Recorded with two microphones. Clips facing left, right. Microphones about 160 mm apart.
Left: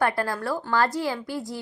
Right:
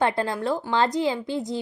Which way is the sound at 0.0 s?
20° right (ahead or behind).